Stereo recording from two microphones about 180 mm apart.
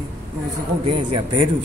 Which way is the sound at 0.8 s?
30° right (ahead or behind).